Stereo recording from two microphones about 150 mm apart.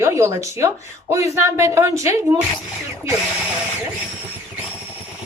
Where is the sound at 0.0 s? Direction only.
20° right (ahead or behind).